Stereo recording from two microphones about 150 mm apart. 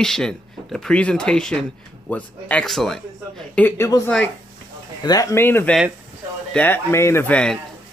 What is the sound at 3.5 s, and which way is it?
Speech, 15° left (ahead or behind).